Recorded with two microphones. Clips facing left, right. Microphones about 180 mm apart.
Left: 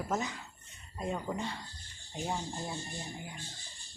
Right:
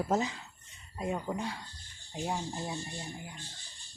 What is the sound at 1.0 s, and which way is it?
A woman's voice, 5° right (ahead or behind).